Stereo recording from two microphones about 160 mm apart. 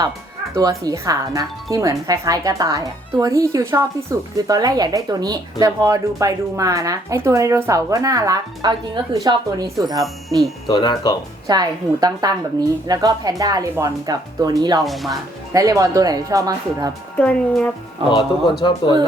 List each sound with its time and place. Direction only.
0.5 s speech: 20° right (ahead or behind)
10.7 s speech: 25° left (ahead or behind)
11.4 s speech: 25° right (ahead or behind)
14.8 s speech: centre (ahead or behind)
15.5 s speech: 20° right (ahead or behind)
17.2 s speech: 10° left (ahead or behind)
18.1 s speech: 30° left (ahead or behind)